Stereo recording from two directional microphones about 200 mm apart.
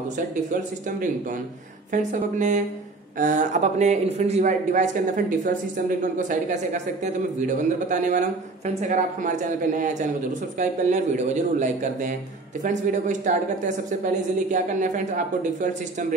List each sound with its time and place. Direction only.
1.9 s speech: 35° right (ahead or behind)
10.6 s speech: 35° right (ahead or behind)